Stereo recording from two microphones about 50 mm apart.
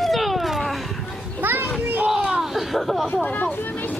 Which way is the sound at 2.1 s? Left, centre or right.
Centre.